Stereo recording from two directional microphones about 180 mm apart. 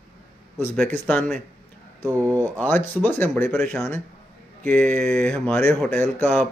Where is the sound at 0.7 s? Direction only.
10° left (ahead or behind).